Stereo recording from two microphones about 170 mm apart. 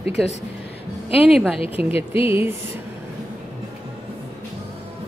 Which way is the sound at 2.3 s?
15° right (ahead or behind).